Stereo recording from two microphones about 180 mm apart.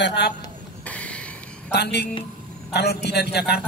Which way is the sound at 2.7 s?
65° left (ahead or behind).